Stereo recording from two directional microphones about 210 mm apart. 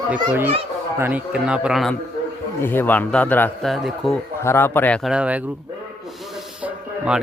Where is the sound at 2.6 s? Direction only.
10° left (ahead or behind).